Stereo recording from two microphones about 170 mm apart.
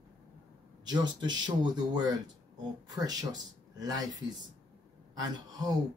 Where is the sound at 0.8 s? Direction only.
25° right (ahead or behind).